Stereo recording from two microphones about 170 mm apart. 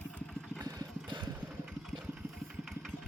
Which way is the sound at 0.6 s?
25° right (ahead or behind).